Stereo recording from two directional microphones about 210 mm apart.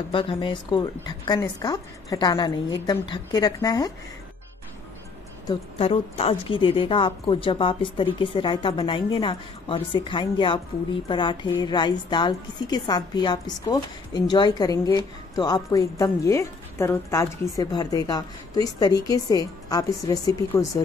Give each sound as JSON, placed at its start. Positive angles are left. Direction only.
{"t": 0.1, "sound": "a woman's voice", "side_deg": 25}
{"t": 5.8, "sound": "a woman's voice", "side_deg": 30}